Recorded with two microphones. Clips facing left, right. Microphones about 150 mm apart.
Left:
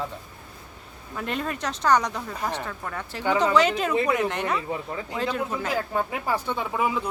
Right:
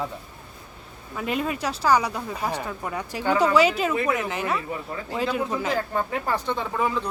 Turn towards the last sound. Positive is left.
turn(degrees=10)  # may be behind; listen again after turning